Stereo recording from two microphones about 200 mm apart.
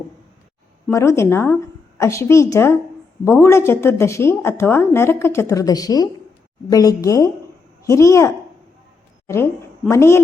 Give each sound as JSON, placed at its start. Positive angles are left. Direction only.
{"t": 0.9, "sound": "a woman's voice", "side_deg": 15}